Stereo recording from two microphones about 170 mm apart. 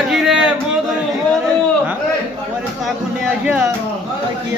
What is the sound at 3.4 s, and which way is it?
Speech, 10° right (ahead or behind).